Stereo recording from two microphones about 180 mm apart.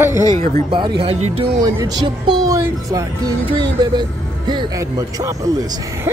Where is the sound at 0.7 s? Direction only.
25° right (ahead or behind).